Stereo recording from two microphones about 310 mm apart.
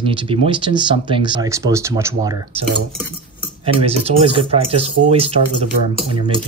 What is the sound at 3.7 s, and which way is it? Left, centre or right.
Speech, centre.